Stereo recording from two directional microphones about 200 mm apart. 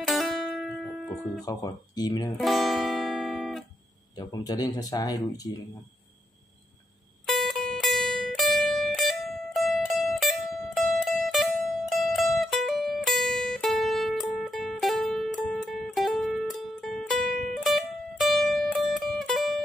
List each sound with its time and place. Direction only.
0.0 s guitar: centre (ahead or behind)
1.4 s speech: 20° left (ahead or behind)
2.3 s music: centre (ahead or behind)
4.1 s speech: 20° left (ahead or behind)
7.2 s music: centre (ahead or behind)